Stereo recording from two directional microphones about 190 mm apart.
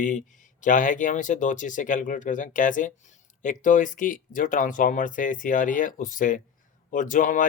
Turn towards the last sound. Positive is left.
turn(degrees=40)  # may be behind; listen again after turning